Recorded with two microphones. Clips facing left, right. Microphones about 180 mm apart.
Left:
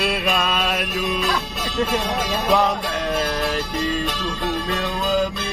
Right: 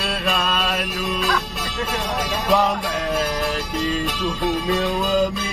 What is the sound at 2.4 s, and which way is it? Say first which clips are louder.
Music: even; centre (ahead or behind).